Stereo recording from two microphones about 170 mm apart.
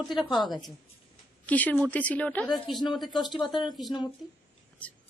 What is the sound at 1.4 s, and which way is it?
A woman's voice, 10° left (ahead or behind).